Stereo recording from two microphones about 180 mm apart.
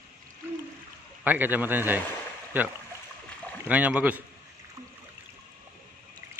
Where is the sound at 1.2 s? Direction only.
10° right (ahead or behind).